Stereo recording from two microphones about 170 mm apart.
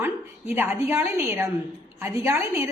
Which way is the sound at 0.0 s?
10° right (ahead or behind).